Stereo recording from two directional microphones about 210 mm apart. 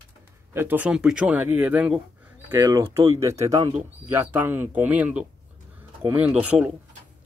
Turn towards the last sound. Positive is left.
turn(degrees=-5)  # may be behind; listen again after turning